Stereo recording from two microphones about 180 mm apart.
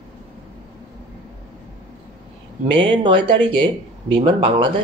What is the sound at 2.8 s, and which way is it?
Speech, 25° right (ahead or behind).